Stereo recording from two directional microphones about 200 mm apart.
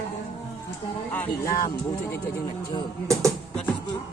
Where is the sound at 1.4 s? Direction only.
15° left (ahead or behind).